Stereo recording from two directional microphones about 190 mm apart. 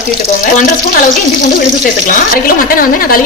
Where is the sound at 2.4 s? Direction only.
50° left (ahead or behind).